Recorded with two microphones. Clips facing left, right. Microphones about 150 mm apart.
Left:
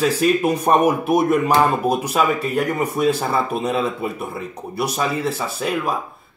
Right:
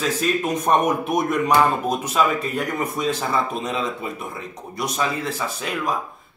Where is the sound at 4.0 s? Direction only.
10° left (ahead or behind).